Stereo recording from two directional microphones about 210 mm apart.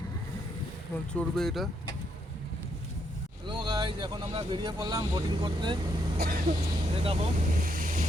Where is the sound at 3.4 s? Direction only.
20° right (ahead or behind).